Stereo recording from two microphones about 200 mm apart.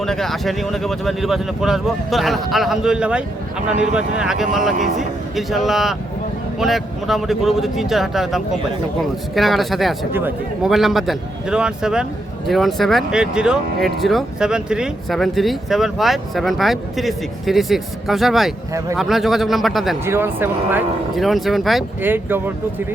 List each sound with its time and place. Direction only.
0.0 s speech: centre (ahead or behind)
20.1 s speech: 10° right (ahead or behind)